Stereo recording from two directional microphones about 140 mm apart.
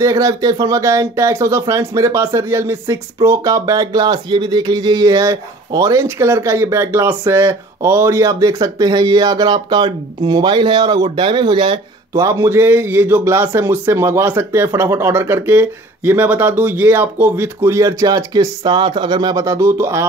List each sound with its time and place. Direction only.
0.0 s speech: 25° right (ahead or behind)
12.1 s a man's voice: 20° right (ahead or behind)